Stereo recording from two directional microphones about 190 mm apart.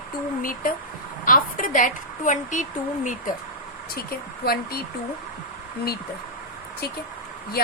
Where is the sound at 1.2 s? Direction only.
45° left (ahead or behind).